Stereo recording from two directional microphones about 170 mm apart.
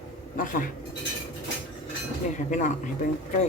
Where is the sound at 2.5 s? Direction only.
45° left (ahead or behind).